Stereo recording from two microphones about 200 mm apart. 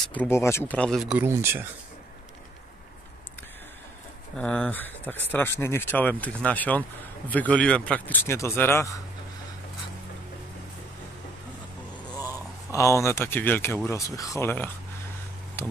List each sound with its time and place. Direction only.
0.1 s speech: 10° left (ahead or behind); by 1.7 s 10° right (ahead or behind)
4.4 s speech: 5° left (ahead or behind)
12.7 s speech: 15° left (ahead or behind)